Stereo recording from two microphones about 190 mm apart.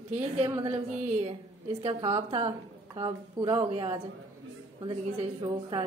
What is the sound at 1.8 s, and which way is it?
A woman's voice, 30° right (ahead or behind).